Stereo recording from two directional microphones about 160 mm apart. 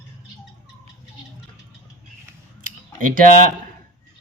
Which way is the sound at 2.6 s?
55° right (ahead or behind).